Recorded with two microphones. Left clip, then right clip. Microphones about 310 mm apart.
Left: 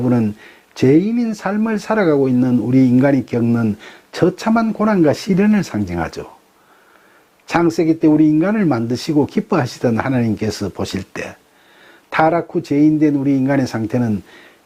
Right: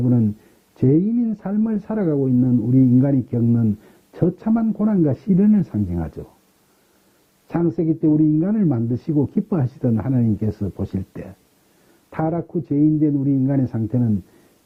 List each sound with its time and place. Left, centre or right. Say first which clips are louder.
0.0 s speech: left 4 dB; centre
7.4 s speech: left 6 dB; centre